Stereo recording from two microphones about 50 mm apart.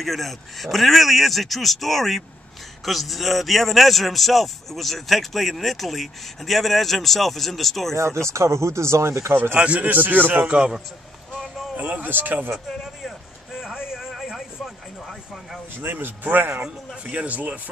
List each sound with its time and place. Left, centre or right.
0.0 s speech: centre
7.9 s speech: right
9.6 s a man's voice: right
9.8 s speech: right
10.4 s a man's voice: centre
11.7 s speech: right
13.0 s a sound: centre
13.7 s vehicle: centre
15.8 s speech: right
17.1 s speech: right